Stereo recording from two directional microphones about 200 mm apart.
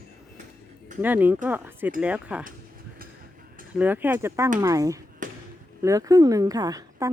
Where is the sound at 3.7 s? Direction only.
10° right (ahead or behind).